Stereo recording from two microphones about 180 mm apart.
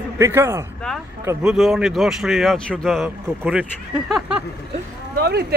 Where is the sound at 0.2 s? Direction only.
15° right (ahead or behind).